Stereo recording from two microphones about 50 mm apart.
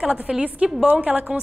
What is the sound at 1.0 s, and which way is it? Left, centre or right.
Speech, right.